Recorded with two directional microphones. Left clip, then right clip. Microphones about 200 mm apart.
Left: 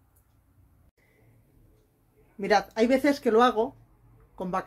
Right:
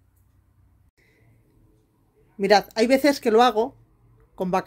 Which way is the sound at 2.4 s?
40° right (ahead or behind).